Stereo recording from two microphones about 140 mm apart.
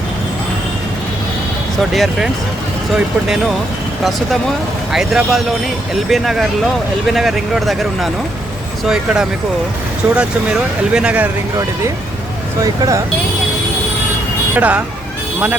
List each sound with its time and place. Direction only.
1.9 s speech: centre (ahead or behind)
4.9 s speech: centre (ahead or behind)
12.5 s speech: 25° right (ahead or behind)
14.5 s speech: 10° right (ahead or behind)